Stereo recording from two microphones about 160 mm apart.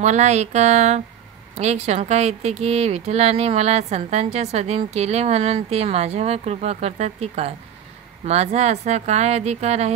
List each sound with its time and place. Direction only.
0.0 s speech: 45° right (ahead or behind)